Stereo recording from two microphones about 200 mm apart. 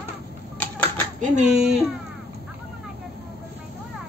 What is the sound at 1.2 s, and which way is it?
Speech, 35° right (ahead or behind).